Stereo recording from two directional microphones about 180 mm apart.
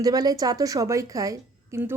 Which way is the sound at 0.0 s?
20° right (ahead or behind).